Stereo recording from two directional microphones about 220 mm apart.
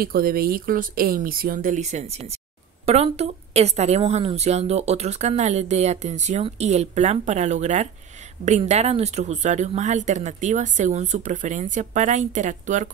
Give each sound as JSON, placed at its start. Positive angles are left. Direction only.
{"t": 0.0, "sound": "a woman's voice", "side_deg": -40}